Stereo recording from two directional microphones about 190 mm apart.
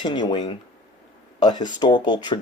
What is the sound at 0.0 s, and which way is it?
Speech, 25° left (ahead or behind).